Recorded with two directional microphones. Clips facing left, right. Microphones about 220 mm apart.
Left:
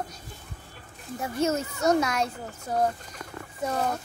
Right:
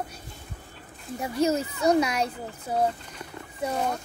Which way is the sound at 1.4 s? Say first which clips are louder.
Right 2 dB; 35° right (ahead or behind).